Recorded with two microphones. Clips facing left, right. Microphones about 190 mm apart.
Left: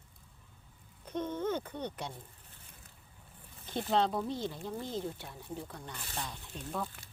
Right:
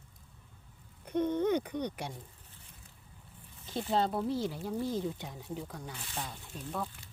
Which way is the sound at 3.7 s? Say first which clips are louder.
Left 1 dB; centre (ahead or behind).